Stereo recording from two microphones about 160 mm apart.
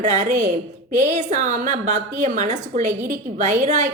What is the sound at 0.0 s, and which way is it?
A woman's voice, 50° right (ahead or behind).